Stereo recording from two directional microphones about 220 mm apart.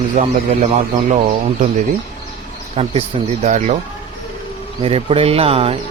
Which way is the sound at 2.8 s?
25° right (ahead or behind).